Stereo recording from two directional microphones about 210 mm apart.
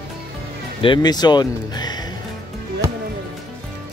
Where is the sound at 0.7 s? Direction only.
25° left (ahead or behind).